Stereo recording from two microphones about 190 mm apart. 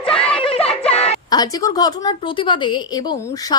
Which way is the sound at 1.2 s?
20° left (ahead or behind).